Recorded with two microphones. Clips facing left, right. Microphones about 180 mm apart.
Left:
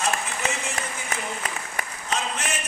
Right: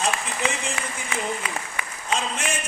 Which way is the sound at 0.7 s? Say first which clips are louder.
Right 1 dB; 45° left (ahead or behind).